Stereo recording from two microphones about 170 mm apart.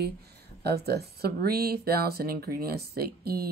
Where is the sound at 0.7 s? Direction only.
70° right (ahead or behind).